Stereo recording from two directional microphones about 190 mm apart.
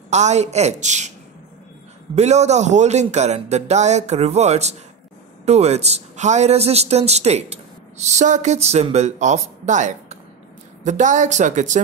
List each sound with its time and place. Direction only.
0.1 s speech: 35° right (ahead or behind)
2.1 s speech: 35° right (ahead or behind)